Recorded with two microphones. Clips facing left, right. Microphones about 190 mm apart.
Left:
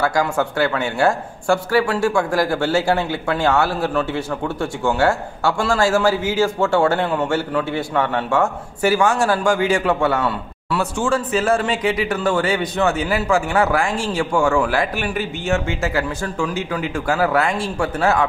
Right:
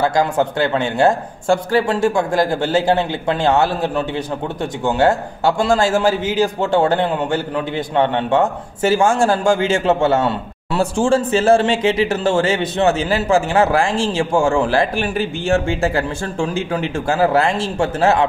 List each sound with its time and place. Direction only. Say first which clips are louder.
0.0 s a man's voice: right 3 dB; 20° right (ahead or behind)